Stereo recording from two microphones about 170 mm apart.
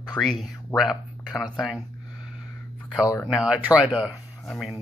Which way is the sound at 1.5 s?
Centre (ahead or behind).